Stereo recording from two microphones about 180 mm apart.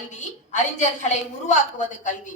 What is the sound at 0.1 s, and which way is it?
A woman's voice, 40° left (ahead or behind).